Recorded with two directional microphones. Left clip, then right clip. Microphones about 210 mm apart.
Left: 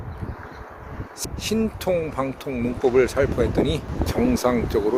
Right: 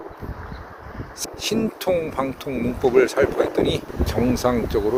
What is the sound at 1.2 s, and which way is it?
Speech, 5° left (ahead or behind).